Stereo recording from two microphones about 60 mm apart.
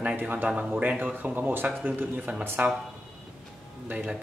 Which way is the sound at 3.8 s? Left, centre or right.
Right.